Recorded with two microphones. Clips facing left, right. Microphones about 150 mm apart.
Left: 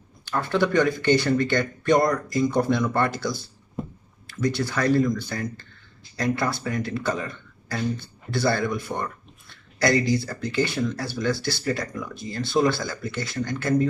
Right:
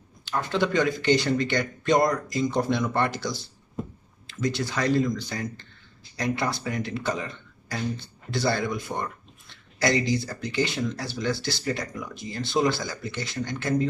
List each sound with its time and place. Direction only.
0.3 s speech: 20° right (ahead or behind)
4.6 s speech: 20° right (ahead or behind)